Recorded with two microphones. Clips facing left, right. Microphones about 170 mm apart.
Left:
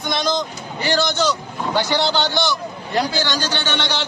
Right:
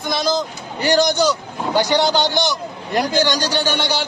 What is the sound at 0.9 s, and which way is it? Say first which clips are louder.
A man's voice: right 4 dB; 15° right (ahead or behind).